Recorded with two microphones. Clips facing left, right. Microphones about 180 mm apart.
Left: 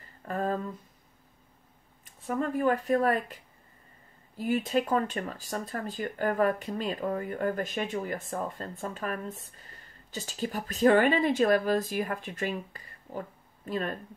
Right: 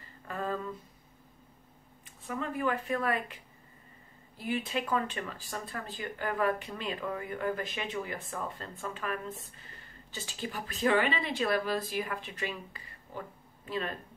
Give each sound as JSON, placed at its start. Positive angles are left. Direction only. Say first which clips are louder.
{"t": 0.3, "sound": "a sound", "louder": "left 5 dB", "side_deg": 45}
{"t": 2.0, "sound": "speech", "louder": "left 6 dB", "side_deg": 45}
{"t": 4.4, "sound": "speech", "louder": "left 6 dB", "side_deg": 45}